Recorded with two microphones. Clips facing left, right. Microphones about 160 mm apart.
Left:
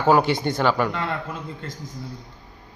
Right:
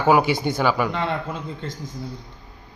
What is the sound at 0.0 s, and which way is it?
Speech, 10° right (ahead or behind).